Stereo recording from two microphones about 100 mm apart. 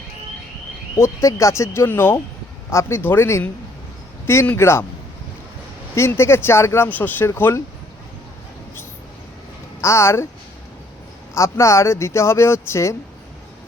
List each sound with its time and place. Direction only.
0.9 s speech: 25° left (ahead or behind)
5.9 s speech: 25° left (ahead or behind)
9.8 s speech: 30° left (ahead or behind)
11.3 s speech: 30° left (ahead or behind)